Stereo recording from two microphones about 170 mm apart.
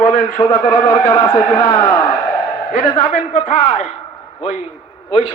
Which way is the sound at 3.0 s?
40° left (ahead or behind).